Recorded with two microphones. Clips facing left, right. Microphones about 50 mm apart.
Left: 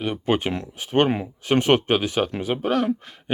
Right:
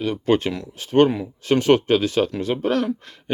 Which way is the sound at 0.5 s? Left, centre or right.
Left.